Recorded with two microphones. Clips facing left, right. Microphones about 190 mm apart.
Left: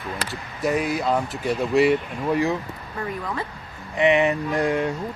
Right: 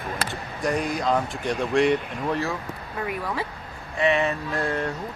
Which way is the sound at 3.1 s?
10° right (ahead or behind).